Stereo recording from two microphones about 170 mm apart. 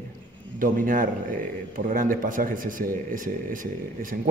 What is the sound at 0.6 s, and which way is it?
Speech, 55° right (ahead or behind).